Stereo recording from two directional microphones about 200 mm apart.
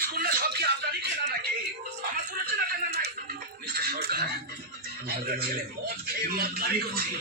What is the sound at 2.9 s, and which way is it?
Music, 55° right (ahead or behind).